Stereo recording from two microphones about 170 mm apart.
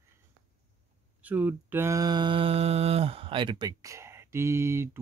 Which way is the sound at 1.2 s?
10° right (ahead or behind).